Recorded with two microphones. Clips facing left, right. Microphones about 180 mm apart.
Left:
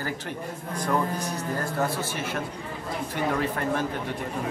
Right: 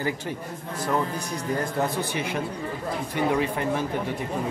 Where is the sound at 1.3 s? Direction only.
15° right (ahead or behind).